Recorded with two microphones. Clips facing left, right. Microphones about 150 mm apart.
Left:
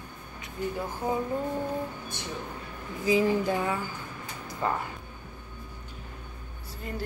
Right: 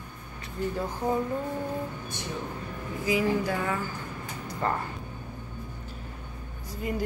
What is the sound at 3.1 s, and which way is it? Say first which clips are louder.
Speech: left 2 dB; 25° left (ahead or behind).